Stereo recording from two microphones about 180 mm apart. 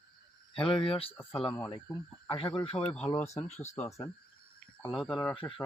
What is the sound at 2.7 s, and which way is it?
Speech, 5° left (ahead or behind).